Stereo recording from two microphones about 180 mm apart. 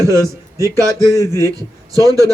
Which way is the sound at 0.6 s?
20° right (ahead or behind).